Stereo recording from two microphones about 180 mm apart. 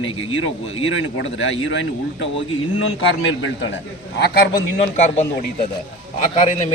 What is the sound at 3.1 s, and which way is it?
Speech, 90° left.